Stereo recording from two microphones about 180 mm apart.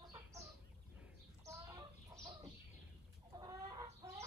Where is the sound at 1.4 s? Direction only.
15° right (ahead or behind).